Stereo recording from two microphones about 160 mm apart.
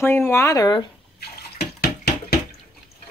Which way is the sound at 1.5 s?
75° left (ahead or behind).